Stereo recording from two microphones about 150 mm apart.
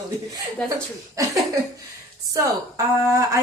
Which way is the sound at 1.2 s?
20° right (ahead or behind).